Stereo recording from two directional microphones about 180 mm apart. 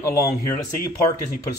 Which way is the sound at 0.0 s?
15° left (ahead or behind).